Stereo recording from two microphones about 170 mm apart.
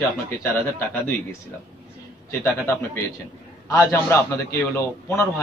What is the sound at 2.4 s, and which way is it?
A man's voice, 15° left (ahead or behind).